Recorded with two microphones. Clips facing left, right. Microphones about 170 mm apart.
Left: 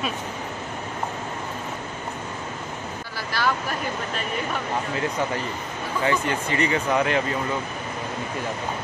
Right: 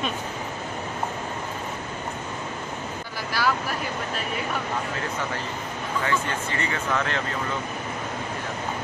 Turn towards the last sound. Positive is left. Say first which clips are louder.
# left 5 dB
turn(degrees=15)  # may be behind; listen again after turning